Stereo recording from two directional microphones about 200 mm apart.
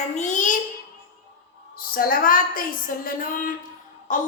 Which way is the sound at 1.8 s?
45° left (ahead or behind).